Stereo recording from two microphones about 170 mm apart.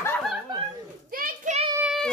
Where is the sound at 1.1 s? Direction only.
55° right (ahead or behind).